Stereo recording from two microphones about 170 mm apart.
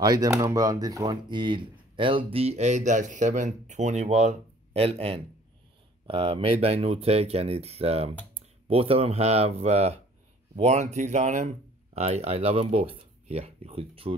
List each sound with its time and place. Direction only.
0.0 s speech: 20° right (ahead or behind)